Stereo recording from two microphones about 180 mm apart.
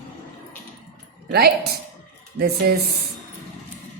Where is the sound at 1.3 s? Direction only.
60° right (ahead or behind).